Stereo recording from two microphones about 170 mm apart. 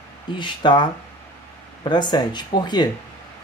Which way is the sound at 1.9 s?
25° left (ahead or behind).